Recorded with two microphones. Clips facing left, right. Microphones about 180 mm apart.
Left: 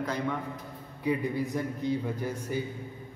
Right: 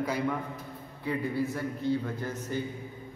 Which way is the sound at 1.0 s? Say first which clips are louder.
Left 1 dB; 15° left (ahead or behind).